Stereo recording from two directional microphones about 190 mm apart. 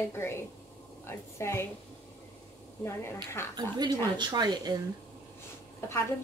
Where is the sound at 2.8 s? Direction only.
15° left (ahead or behind).